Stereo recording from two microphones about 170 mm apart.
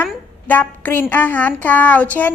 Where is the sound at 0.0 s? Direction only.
10° left (ahead or behind).